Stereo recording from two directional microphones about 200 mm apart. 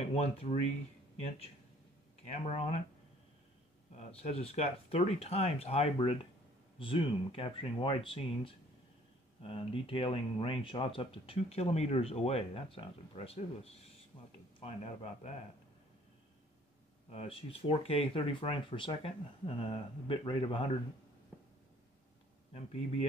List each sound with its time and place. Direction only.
0.0 s speech: 30° left (ahead or behind)
2.2 s speech: 30° left (ahead or behind)
3.9 s speech: 30° left (ahead or behind)
17.1 s speech: 30° left (ahead or behind)
22.5 s speech: 30° left (ahead or behind)